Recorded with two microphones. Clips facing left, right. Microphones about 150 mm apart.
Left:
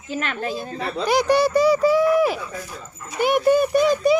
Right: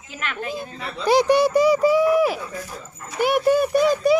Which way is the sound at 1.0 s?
25° right (ahead or behind).